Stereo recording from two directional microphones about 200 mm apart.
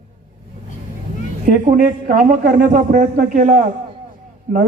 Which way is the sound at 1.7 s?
45° right (ahead or behind).